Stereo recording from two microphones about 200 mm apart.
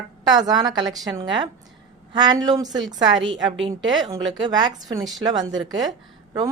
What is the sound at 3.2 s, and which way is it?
Speech, 70° right (ahead or behind).